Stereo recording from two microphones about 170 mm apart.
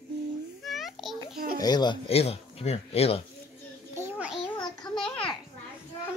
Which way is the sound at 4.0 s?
10° right (ahead or behind).